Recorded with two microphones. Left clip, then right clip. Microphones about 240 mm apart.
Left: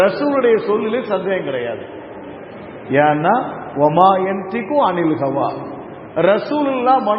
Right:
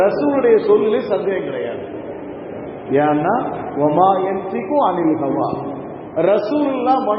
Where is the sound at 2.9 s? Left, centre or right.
Left.